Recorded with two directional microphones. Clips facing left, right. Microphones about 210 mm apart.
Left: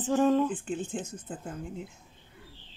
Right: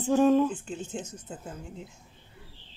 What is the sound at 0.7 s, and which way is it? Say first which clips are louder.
Speech: left 3 dB; 55° left (ahead or behind).